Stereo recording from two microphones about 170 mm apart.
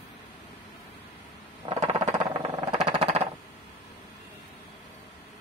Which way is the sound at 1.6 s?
30° right (ahead or behind).